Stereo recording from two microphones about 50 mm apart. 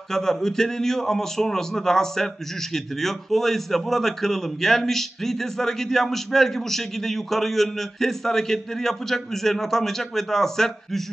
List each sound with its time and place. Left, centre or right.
0.1 s a man's voice: centre